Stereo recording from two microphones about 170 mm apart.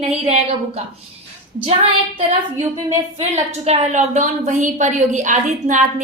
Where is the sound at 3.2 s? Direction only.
40° right (ahead or behind).